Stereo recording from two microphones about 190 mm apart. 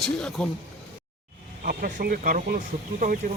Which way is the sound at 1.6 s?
50° right (ahead or behind).